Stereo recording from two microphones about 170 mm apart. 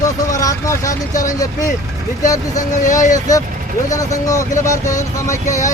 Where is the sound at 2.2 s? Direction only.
20° left (ahead or behind).